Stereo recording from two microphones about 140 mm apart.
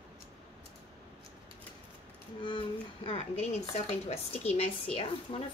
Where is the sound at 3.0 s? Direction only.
45° left (ahead or behind).